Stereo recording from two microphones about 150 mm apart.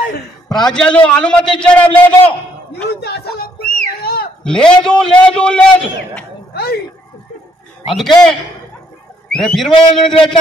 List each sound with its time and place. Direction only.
0.5 s a man's voice: 5° left (ahead or behind)
3.0 s speech: 90° left
4.0 s a sound: 90° left
4.5 s a man's voice: 5° left (ahead or behind)
6.5 s speech: 90° left
7.9 s a man's voice: centre (ahead or behind)
9.3 s a man's voice: centre (ahead or behind)